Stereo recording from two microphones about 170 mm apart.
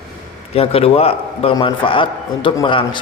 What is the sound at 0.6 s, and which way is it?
A man's voice, 35° left (ahead or behind).